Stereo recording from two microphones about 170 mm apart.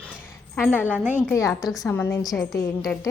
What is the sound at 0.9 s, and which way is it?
Speech, 10° right (ahead or behind).